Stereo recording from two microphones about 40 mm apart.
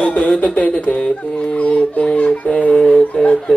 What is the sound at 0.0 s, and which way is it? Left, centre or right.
Speech, left.